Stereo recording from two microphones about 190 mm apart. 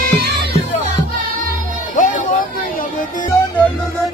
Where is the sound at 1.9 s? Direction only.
45° left (ahead or behind).